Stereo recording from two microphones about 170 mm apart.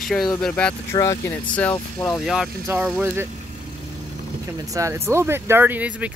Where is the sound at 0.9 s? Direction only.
20° left (ahead or behind).